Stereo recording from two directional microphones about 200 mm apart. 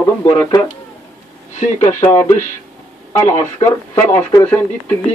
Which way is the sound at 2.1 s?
10° left (ahead or behind).